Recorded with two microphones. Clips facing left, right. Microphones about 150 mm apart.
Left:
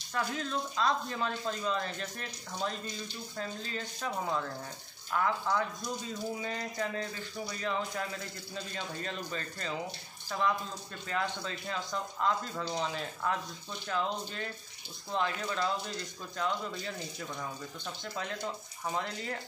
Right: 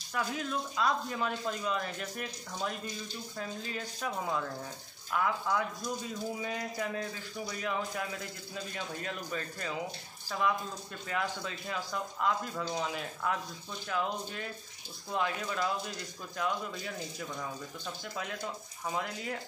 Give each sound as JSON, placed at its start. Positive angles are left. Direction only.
{"t": 0.1, "sound": "speech", "side_deg": -10}
{"t": 3.3, "sound": "speech", "side_deg": -10}
{"t": 5.1, "sound": "speech", "side_deg": -5}
{"t": 11.1, "sound": "speech", "side_deg": -5}
{"t": 18.9, "sound": "speech", "side_deg": -5}